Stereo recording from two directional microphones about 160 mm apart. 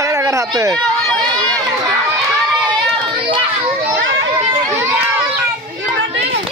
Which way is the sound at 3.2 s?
35° right (ahead or behind).